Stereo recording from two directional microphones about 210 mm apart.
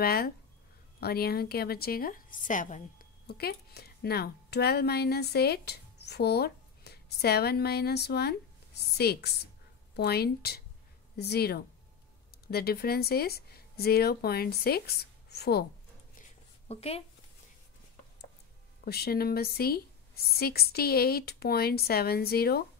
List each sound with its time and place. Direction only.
0.0 s a woman's voice: 45° left (ahead or behind)
16.2 s a sound: 30° left (ahead or behind)
18.9 s a woman's voice: 50° left (ahead or behind)